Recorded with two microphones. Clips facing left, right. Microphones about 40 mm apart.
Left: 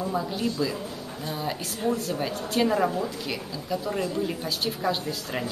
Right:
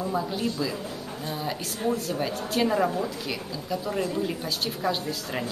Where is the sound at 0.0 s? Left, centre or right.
Centre.